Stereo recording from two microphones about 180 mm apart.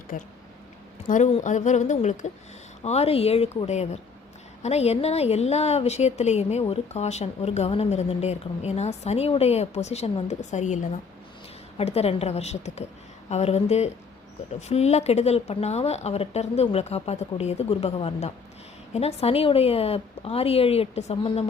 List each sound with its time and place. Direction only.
0.1 s a woman's voice: 50° left (ahead or behind)